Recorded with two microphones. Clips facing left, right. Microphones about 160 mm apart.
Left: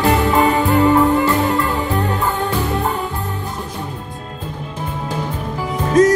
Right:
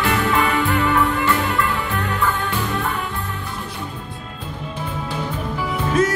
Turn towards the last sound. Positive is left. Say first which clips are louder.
# left 7 dB
turn(degrees=40)  # may be behind; listen again after turning